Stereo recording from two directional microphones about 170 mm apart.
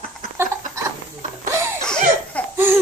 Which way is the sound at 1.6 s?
15° right (ahead or behind).